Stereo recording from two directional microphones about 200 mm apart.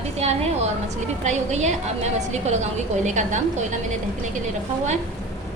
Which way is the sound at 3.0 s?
35° right (ahead or behind).